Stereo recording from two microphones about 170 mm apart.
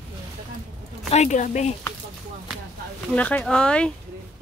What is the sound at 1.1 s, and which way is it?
Speech, 45° left (ahead or behind).